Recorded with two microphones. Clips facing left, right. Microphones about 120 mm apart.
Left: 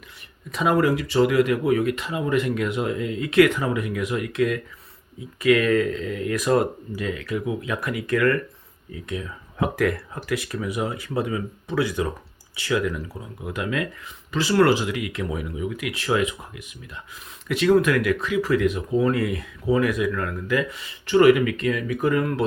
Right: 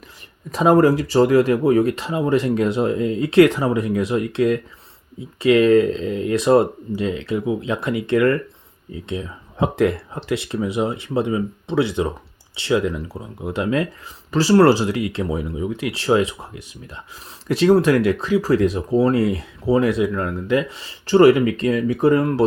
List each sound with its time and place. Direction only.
0.5 s speech: 35° right (ahead or behind)